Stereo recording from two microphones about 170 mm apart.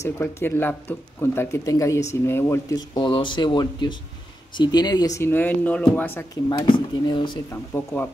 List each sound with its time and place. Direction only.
0.0 s speech: 15° left (ahead or behind)
6.6 s speech: 25° left (ahead or behind)
7.7 s speech: 10° left (ahead or behind)